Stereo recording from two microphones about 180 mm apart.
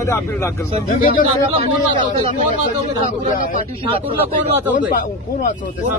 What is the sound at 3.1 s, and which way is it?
Speech, 50° left (ahead or behind).